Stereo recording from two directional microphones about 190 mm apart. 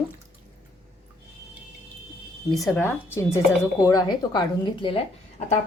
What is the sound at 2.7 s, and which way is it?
A woman's voice, 10° left (ahead or behind).